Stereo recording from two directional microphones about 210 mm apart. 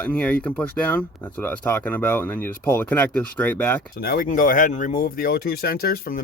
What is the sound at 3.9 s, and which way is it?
Speech, 45° left (ahead or behind).